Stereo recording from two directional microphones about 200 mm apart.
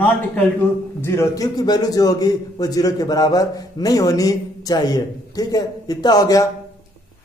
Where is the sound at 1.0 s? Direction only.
15° left (ahead or behind).